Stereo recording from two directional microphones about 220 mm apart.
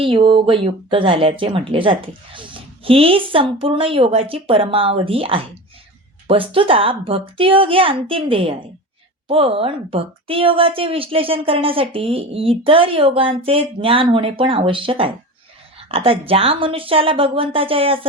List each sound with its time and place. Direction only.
0.0 s a woman's voice: 25° right (ahead or behind)